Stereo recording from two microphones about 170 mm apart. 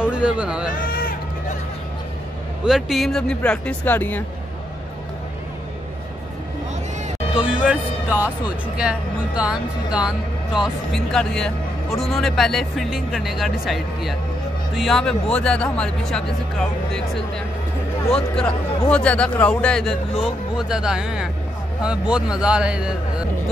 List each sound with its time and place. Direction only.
0.0 s speech: 5° right (ahead or behind)
0.7 s a sound: 55° left (ahead or behind)
2.6 s speech: centre (ahead or behind)
7.3 s speech: 5° right (ahead or behind)
9.4 s speech: 5° right (ahead or behind)
18.1 s speech: 5° left (ahead or behind)